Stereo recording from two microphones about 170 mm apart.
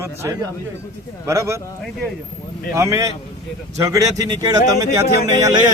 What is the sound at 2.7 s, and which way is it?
A man's voice, 20° right (ahead or behind).